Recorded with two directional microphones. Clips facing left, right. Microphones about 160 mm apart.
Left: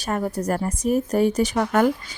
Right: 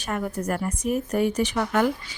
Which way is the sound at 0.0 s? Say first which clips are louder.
Left 3 dB; 35° left (ahead or behind).